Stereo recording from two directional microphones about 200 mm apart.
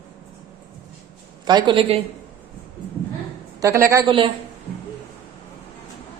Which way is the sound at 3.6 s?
15° right (ahead or behind).